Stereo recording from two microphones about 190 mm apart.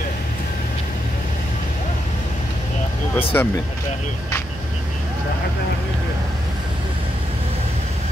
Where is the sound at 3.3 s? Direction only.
15° left (ahead or behind).